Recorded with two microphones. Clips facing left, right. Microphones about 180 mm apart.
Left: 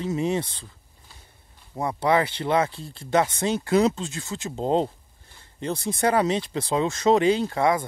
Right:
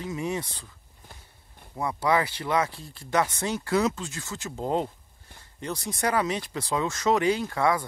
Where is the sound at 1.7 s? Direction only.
25° left (ahead or behind).